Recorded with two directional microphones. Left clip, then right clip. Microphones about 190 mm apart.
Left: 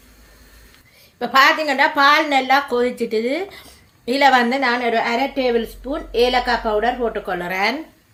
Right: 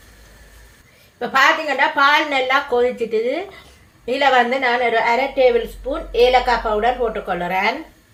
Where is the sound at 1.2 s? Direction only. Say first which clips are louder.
Left 1 dB; 45° left (ahead or behind); by 7.7 s 60° left (ahead or behind).